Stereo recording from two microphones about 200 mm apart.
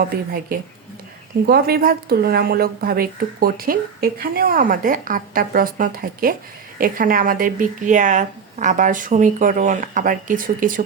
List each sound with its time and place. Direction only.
0.0 s a woman's voice: 45° right (ahead or behind)